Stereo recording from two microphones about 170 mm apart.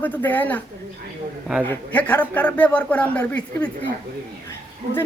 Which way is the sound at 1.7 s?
10° left (ahead or behind).